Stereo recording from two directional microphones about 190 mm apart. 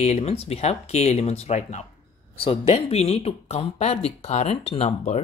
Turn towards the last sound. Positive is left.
turn(degrees=35)  # may be behind; listen again after turning